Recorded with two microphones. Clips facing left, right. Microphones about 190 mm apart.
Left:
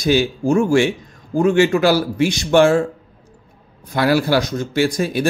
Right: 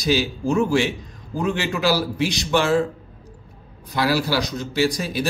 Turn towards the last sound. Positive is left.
turn(degrees=50)  # may be behind; listen again after turning